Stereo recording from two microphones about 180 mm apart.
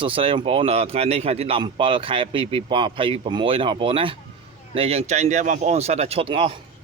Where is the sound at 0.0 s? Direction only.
30° right (ahead or behind).